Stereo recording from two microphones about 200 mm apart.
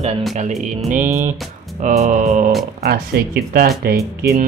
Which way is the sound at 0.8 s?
40° right (ahead or behind).